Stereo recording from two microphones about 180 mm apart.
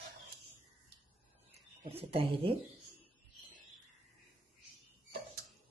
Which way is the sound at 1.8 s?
35° right (ahead or behind).